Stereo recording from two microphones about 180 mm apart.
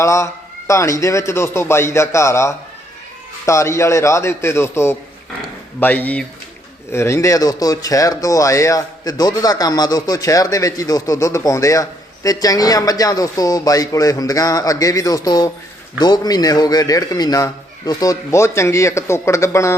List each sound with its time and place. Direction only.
0.0 s a man's voice: 15° left (ahead or behind)